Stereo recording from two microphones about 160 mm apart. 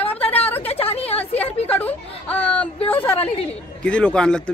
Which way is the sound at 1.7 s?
10° left (ahead or behind).